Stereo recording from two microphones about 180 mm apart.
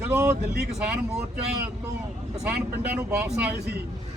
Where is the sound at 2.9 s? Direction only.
5° right (ahead or behind).